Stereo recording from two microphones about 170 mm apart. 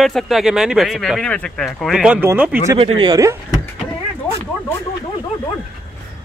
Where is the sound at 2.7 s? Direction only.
35° right (ahead or behind).